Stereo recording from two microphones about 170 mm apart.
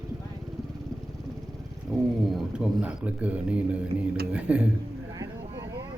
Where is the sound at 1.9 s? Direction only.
Centre (ahead or behind).